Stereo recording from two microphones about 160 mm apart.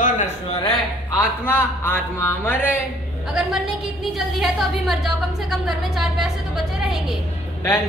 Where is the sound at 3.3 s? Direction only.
5° right (ahead or behind).